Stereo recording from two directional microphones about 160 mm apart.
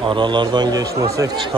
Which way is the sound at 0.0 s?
30° right (ahead or behind).